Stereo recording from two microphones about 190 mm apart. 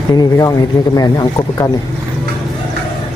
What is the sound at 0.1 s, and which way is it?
Speech, 20° left (ahead or behind).